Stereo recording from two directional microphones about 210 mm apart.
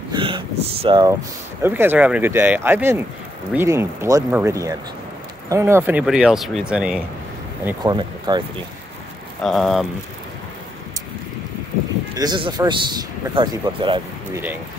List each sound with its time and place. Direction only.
0.1 s a sound: 25° right (ahead or behind)
0.8 s a man's voice: 20° right (ahead or behind)
1.6 s speech: 10° right (ahead or behind)
7.8 s a man's voice: 20° right (ahead or behind)
9.4 s speech: centre (ahead or behind)
12.2 s a man's voice: 20° right (ahead or behind)